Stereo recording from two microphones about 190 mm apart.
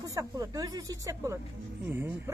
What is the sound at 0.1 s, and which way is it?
Speech, 20° right (ahead or behind).